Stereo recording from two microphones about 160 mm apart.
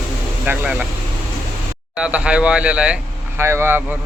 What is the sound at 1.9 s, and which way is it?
Speech, 5° right (ahead or behind).